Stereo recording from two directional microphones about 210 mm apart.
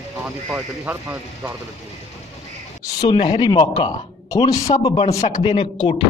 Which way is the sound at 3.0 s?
20° left (ahead or behind).